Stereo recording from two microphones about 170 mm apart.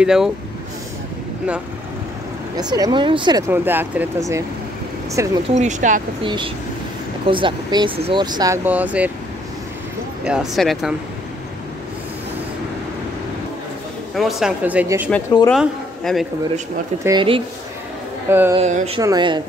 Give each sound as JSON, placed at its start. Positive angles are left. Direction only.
{"t": 0.0, "sound": "speech", "side_deg": -5}
{"t": 2.5, "sound": "speech", "side_deg": -25}
{"t": 3.4, "sound": "speech", "side_deg": -10}
{"t": 5.1, "sound": "speech", "side_deg": -20}
{"t": 5.5, "sound": "speech", "side_deg": -45}
{"t": 6.2, "sound": "speech", "side_deg": -30}
{"t": 8.6, "sound": "speech", "side_deg": -10}
{"t": 10.2, "sound": "speech", "side_deg": -5}
{"t": 14.1, "sound": "speech", "side_deg": 0}
{"t": 15.5, "sound": "a man's voice", "side_deg": 0}
{"t": 17.0, "sound": "speech", "side_deg": -25}
{"t": 18.3, "sound": "speech", "side_deg": -10}
{"t": 18.6, "sound": "speech", "side_deg": -40}
{"t": 18.9, "sound": "speech", "side_deg": -25}